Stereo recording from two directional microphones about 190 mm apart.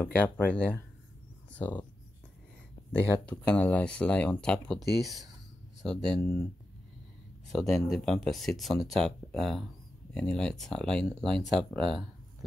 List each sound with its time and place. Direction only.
0.0 s speech: 10° left (ahead or behind)
2.9 s speech: 5° left (ahead or behind)
6.2 s speech: 15° left (ahead or behind)
7.5 s speech: centre (ahead or behind)